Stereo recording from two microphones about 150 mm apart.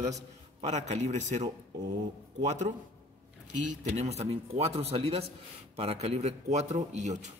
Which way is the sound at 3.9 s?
45° right (ahead or behind).